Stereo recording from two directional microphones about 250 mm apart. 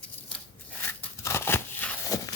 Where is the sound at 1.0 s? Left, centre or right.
Centre.